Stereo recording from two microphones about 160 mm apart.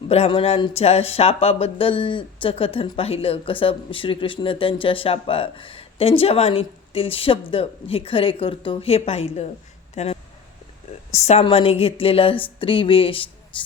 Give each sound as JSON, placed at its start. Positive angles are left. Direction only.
{"t": 0.1, "sound": "speech", "side_deg": 35}